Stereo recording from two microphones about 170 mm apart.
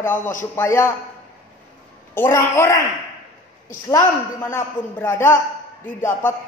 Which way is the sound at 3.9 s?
15° left (ahead or behind).